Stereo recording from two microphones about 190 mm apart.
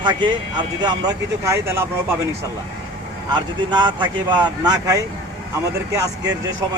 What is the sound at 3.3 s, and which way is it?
Speech, 20° right (ahead or behind).